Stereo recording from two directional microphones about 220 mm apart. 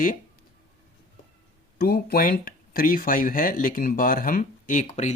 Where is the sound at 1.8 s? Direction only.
45° left (ahead or behind).